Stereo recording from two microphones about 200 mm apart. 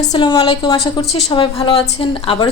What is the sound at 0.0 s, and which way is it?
A woman's voice, 20° left (ahead or behind).